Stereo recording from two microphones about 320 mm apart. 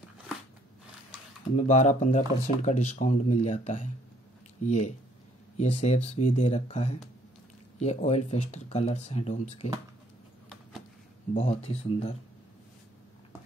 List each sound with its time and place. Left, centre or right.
1.6 s speech: left
11.3 s speech: left